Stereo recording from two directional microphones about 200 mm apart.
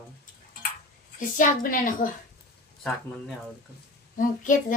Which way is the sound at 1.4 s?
40° left (ahead or behind).